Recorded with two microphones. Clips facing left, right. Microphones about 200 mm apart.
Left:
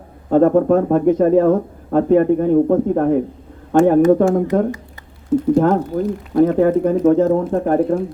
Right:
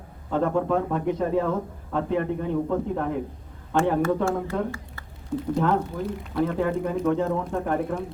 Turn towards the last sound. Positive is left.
turn(degrees=40)  # may be behind; listen again after turning